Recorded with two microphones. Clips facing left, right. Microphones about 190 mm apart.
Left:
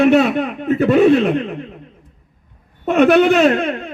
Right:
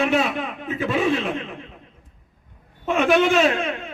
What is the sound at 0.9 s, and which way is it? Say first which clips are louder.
Speech: left 10 dB; 60° left (ahead or behind).